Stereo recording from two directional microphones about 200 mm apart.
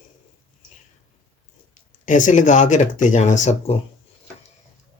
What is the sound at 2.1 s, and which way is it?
Speech, 40° left (ahead or behind).